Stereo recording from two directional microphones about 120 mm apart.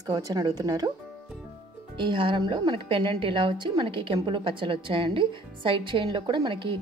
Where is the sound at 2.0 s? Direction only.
45° right (ahead or behind).